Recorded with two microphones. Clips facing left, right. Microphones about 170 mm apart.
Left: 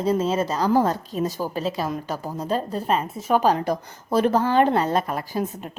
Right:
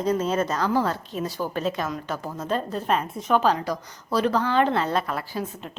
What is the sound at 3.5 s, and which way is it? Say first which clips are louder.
A woman's voice: left 4 dB; 50° left (ahead or behind).